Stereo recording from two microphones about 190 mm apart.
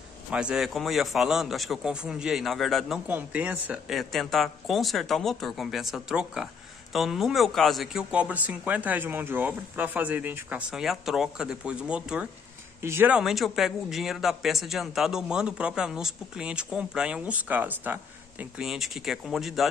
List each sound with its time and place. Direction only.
0.3 s speech: 5° right (ahead or behind)